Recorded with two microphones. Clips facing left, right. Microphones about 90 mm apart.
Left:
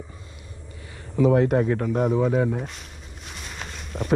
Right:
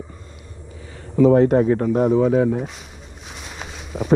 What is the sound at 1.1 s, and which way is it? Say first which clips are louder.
Speech: right 5 dB; 35° right (ahead or behind).